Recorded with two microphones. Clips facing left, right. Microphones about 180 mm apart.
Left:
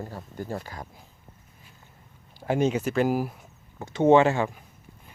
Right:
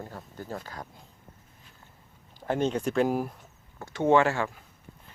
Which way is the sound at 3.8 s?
20° left (ahead or behind).